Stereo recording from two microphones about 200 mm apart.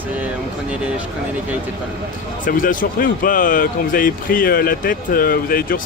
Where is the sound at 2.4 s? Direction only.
45° left (ahead or behind).